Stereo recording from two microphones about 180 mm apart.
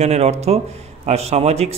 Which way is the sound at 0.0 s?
35° right (ahead or behind).